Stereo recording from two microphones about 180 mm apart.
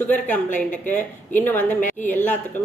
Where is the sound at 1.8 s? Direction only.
45° left (ahead or behind).